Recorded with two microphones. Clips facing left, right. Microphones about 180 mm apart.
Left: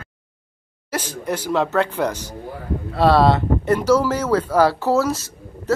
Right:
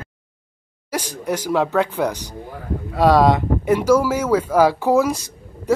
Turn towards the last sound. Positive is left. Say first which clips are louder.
# right 2 dB
turn(degrees=-15)  # may be behind; listen again after turning